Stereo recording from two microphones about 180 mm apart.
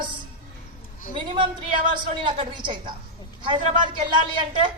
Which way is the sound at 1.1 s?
30° right (ahead or behind).